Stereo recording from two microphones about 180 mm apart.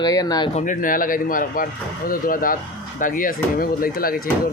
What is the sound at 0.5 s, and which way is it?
Speech, 45° left (ahead or behind).